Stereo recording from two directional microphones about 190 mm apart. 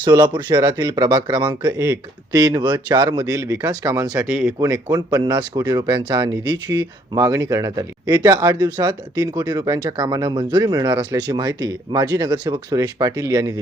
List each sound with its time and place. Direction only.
0.0 s speech: 20° right (ahead or behind)
4.2 s speech: centre (ahead or behind)
4.6 s speech: 20° right (ahead or behind)